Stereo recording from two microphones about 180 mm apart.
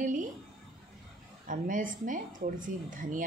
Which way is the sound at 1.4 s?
45° right (ahead or behind).